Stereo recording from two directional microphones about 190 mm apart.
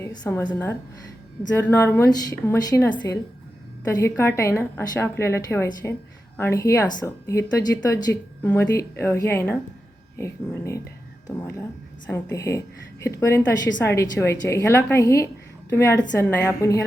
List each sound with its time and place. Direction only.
0.0 s speech: 15° left (ahead or behind)